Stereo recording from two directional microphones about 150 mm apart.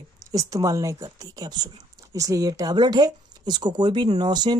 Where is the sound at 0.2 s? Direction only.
25° right (ahead or behind).